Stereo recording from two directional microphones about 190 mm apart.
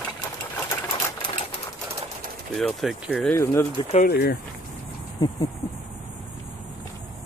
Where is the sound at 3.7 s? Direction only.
35° left (ahead or behind).